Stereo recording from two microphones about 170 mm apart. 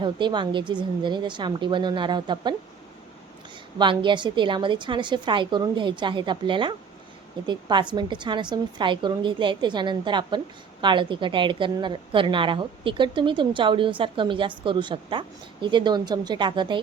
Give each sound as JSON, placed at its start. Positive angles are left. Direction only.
{"t": 0.0, "sound": "a woman's voice", "side_deg": -25}
{"t": 3.8, "sound": "a woman's voice", "side_deg": -30}